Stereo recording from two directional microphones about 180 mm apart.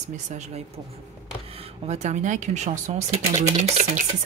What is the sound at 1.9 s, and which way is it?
Speech, 40° right (ahead or behind).